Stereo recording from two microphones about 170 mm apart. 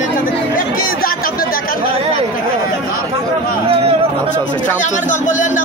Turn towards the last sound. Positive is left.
turn(degrees=50)  # may be behind; listen again after turning